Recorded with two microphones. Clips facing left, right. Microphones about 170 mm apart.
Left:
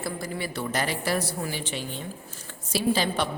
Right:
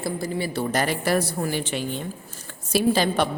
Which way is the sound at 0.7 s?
50° right (ahead or behind).